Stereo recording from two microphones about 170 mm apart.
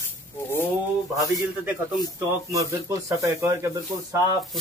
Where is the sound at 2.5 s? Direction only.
20° right (ahead or behind).